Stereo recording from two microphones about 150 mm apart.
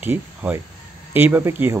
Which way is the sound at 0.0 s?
10° right (ahead or behind).